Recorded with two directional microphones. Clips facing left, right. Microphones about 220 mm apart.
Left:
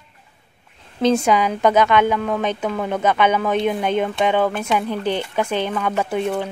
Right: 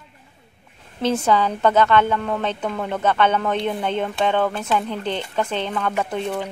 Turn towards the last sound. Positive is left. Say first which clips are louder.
# left 3 dB
turn(degrees=10)  # may be behind; listen again after turning